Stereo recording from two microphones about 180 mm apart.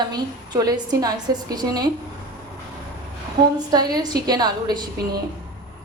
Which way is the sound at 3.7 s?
20° right (ahead or behind).